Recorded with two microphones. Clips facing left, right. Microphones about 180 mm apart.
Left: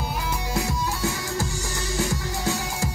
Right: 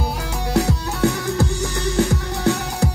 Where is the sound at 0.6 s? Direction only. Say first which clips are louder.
Right 9 dB; 65° right (ahead or behind).